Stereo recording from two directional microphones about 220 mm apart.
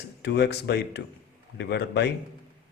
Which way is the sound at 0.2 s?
50° left (ahead or behind).